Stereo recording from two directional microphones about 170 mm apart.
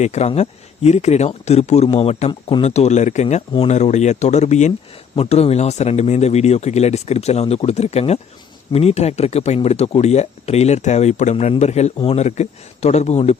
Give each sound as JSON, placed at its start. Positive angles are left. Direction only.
{"t": 0.0, "sound": "speech", "side_deg": 40}